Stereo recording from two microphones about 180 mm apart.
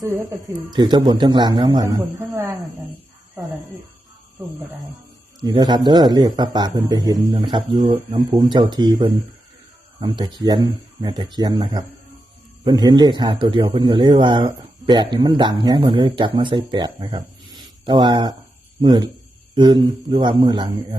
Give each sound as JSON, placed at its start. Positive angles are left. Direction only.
{"t": 0.0, "sound": "a man's voice", "side_deg": -20}
{"t": 5.4, "sound": "a man's voice", "side_deg": -25}
{"t": 7.9, "sound": "speech", "side_deg": -35}
{"t": 8.3, "sound": "a man's voice", "side_deg": -25}